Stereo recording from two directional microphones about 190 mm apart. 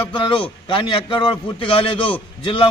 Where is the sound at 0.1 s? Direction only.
25° left (ahead or behind).